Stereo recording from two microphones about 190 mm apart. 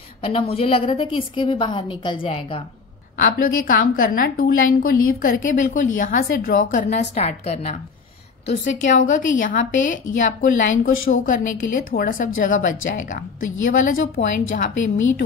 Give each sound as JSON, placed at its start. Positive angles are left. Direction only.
{"t": 0.2, "sound": "a woman's voice", "side_deg": 30}
{"t": 3.2, "sound": "a woman's voice", "side_deg": 45}